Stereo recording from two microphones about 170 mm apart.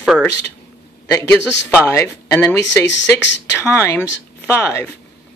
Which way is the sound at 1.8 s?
15° left (ahead or behind).